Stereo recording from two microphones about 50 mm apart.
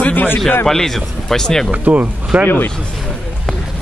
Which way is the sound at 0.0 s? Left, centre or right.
Left.